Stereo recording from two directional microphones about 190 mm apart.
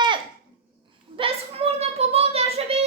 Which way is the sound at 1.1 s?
30° right (ahead or behind).